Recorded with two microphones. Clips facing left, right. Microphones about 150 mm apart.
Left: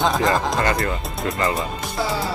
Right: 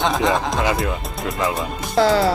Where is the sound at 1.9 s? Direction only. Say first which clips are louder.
Right 10 dB; 90° right.